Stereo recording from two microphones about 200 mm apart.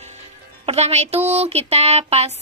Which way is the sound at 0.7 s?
35° right (ahead or behind).